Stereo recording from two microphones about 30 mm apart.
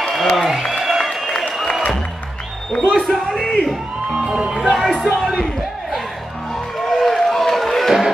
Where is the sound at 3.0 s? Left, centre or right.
Centre.